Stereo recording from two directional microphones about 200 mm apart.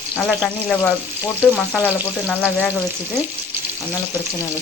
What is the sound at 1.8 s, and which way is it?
Frying, 10° right (ahead or behind).